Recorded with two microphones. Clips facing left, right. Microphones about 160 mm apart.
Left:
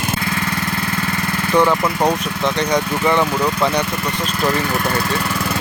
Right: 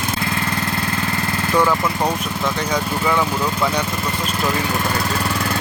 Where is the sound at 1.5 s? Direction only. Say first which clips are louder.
Left 3 dB; 10° left (ahead or behind).